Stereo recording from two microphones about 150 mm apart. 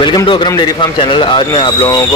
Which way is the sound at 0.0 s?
30° left (ahead or behind).